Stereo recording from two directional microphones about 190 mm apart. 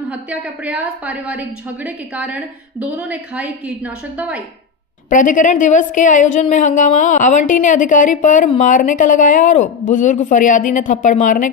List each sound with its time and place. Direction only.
0.1 s a woman's voice: 5° right (ahead or behind)
5.1 s a woman's voice: 40° left (ahead or behind)